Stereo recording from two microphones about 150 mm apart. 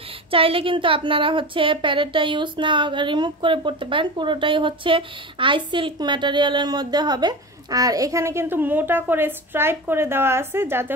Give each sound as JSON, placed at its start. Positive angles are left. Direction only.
{"t": 0.3, "sound": "a woman's voice", "side_deg": -35}